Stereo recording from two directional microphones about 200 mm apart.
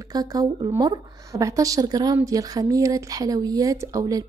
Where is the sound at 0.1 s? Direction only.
20° right (ahead or behind).